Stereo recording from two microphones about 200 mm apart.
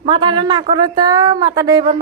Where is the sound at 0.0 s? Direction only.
25° right (ahead or behind).